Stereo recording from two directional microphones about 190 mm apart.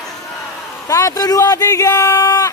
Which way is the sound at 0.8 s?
15° left (ahead or behind).